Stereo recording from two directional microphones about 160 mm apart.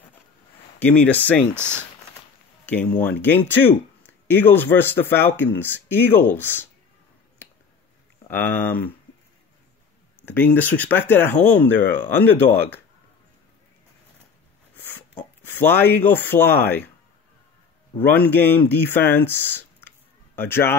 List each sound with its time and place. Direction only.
0.7 s speech: 10° left (ahead or behind)
2.6 s speech: 10° left (ahead or behind)
7.4 s a sound: 15° left (ahead or behind)
8.3 s speech: 10° left (ahead or behind)
10.2 s speech: 10° left (ahead or behind)
15.0 s speech: 10° left (ahead or behind)
18.0 s speech: 10° left (ahead or behind)